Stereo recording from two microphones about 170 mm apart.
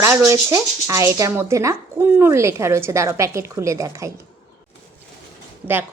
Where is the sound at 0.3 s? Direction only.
20° right (ahead or behind).